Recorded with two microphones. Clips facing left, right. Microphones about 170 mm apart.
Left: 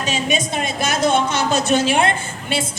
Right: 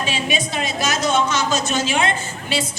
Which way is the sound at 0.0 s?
45° left (ahead or behind).